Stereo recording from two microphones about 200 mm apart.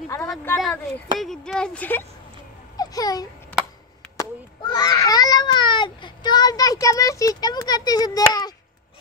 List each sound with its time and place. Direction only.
0.1 s a child's voice: 5° left (ahead or behind)